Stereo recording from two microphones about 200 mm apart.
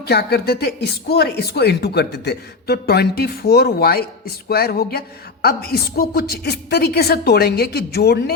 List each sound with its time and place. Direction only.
0.1 s speech: 55° left (ahead or behind)